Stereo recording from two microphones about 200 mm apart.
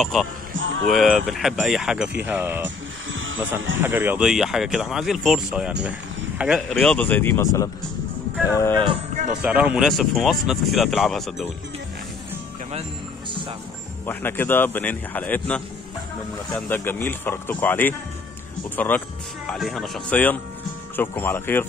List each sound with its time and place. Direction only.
0.0 s speech: centre (ahead or behind)
0.6 s music: 70° right (ahead or behind)
0.8 s speech: centre (ahead or behind)
3.1 s music: 75° right (ahead or behind)
3.8 s a man's voice: 10° right (ahead or behind); by 8.8 s 15° left (ahead or behind)
9.4 s speech: 5° right (ahead or behind)
14.0 s a man's voice: 10° left (ahead or behind)